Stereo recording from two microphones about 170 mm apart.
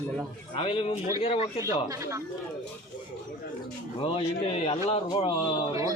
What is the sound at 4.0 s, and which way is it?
A man's voice, 35° left (ahead or behind).